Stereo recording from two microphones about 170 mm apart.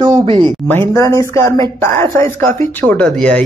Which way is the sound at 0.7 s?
15° left (ahead or behind).